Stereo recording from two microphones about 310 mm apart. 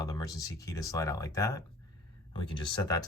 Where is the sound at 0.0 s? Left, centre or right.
Centre.